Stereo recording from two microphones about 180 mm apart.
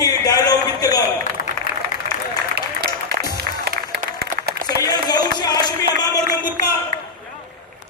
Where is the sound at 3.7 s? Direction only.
60° right (ahead or behind).